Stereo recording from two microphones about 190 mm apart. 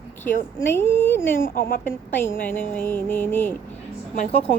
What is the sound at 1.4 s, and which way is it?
Speech, 50° left (ahead or behind).